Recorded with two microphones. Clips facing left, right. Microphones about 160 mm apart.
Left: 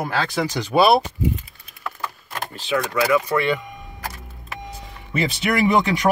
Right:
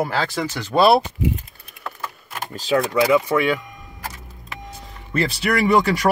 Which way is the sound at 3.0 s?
20° right (ahead or behind).